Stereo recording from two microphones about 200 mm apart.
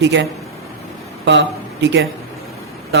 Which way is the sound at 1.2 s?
60° right (ahead or behind).